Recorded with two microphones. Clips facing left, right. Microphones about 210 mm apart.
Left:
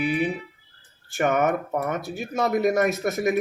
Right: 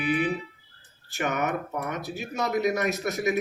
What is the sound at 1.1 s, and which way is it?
Speech, 50° left (ahead or behind).